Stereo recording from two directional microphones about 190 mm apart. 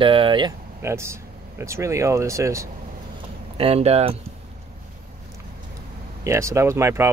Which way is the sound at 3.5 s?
30° right (ahead or behind).